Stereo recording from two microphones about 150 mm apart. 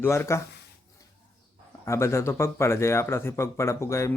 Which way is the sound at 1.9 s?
20° left (ahead or behind).